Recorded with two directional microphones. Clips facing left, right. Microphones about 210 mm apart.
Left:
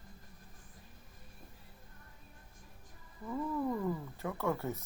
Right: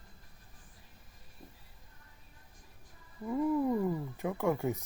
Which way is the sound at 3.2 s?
15° right (ahead or behind).